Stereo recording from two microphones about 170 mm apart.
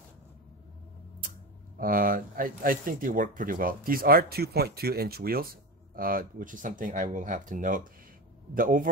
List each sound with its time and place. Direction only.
1.8 s a man's voice: 55° right (ahead or behind)